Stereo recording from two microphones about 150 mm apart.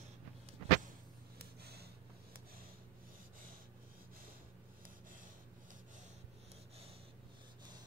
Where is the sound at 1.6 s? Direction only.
90° right.